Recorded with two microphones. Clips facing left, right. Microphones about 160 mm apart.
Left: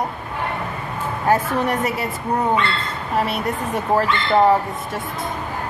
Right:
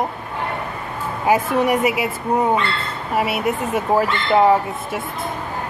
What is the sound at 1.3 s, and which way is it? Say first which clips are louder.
Speech: right 2 dB; 10° right (ahead or behind).